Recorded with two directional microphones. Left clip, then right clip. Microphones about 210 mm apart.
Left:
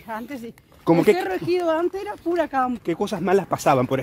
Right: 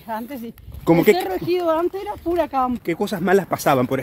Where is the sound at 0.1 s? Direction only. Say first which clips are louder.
Right 3 dB; 5° left (ahead or behind).